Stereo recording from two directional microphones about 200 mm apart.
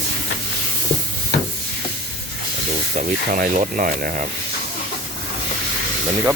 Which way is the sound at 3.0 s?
40° right (ahead or behind).